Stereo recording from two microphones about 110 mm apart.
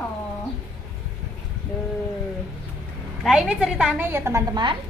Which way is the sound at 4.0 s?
20° right (ahead or behind).